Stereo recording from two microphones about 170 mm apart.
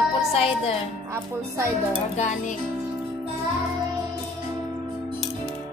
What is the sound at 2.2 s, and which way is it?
Music, 45° left (ahead or behind).